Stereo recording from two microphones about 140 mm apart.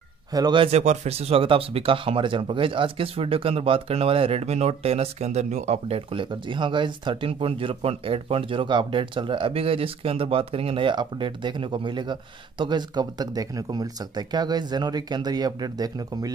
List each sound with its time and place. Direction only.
0.3 s speech: 30° right (ahead or behind)
0.7 s speech: 50° right (ahead or behind); by 16.3 s 25° right (ahead or behind)